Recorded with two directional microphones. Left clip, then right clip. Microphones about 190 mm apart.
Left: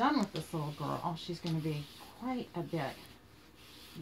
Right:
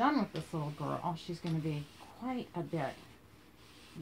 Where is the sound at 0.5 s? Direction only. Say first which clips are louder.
Even; 10° left (ahead or behind).